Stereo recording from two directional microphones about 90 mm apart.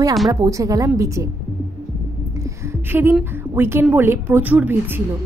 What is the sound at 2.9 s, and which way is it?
A woman's voice, 25° right (ahead or behind).